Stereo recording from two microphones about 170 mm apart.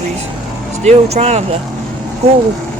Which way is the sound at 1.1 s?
40° right (ahead or behind).